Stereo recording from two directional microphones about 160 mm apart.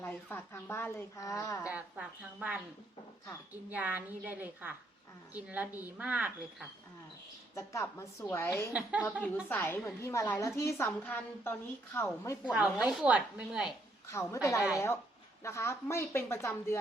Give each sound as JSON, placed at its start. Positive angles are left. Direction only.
{"t": 0.0, "sound": "a woman's voice", "side_deg": 10}
{"t": 1.7, "sound": "a woman's voice", "side_deg": -10}
{"t": 3.7, "sound": "a woman's voice", "side_deg": -10}
{"t": 7.5, "sound": "a woman's voice", "side_deg": 20}
{"t": 8.7, "sound": "a woman's voice", "side_deg": -10}
{"t": 9.2, "sound": "a woman's voice", "side_deg": 10}
{"t": 12.5, "sound": "a woman's voice", "side_deg": -5}
{"t": 14.1, "sound": "a woman's voice", "side_deg": 15}